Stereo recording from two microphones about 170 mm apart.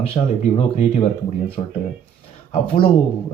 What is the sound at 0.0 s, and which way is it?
Speech, 35° left (ahead or behind).